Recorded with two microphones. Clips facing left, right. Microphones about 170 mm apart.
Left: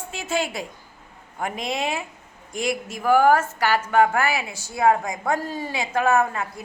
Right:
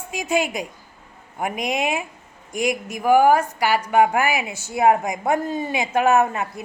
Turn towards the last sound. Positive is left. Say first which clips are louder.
# right 3 dB
turn(degrees=-20)  # may be behind; listen again after turning